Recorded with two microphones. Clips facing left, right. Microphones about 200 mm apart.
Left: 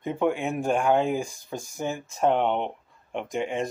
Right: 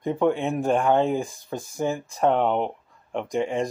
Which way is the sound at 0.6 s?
Centre (ahead or behind).